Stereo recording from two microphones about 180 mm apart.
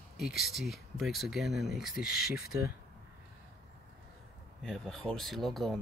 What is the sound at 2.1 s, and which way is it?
Speech, 60° left (ahead or behind).